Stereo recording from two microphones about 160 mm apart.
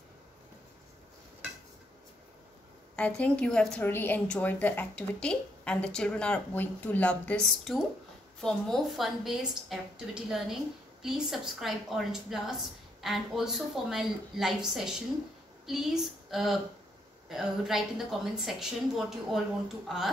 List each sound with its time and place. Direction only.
3.0 s a woman's voice: 5° left (ahead or behind)
15.6 s a sound: centre (ahead or behind)
17.3 s a woman's voice: 5° right (ahead or behind)